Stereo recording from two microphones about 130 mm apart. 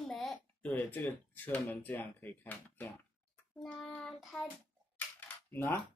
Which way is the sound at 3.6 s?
5° left (ahead or behind).